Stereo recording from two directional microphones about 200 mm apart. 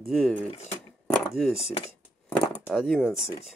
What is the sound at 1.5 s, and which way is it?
Speech, 30° left (ahead or behind).